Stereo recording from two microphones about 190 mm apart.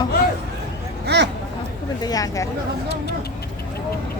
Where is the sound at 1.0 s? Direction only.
65° right (ahead or behind).